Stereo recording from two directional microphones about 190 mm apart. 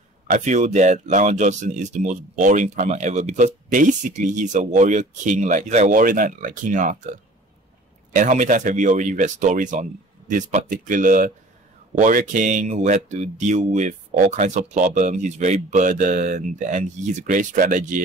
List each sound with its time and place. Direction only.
0.3 s speech: 40° right (ahead or behind)